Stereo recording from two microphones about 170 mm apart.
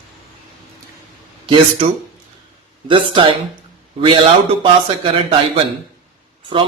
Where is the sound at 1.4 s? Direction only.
30° right (ahead or behind).